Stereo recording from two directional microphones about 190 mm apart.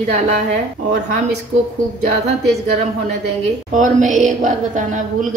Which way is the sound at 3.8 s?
40° right (ahead or behind).